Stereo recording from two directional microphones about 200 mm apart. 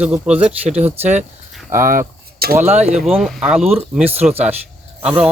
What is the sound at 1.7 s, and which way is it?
Speech, 45° right (ahead or behind).